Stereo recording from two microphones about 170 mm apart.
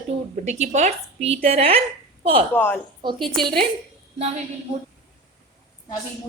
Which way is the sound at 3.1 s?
Centre (ahead or behind).